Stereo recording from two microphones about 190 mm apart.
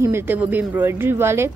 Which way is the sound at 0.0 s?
10° right (ahead or behind).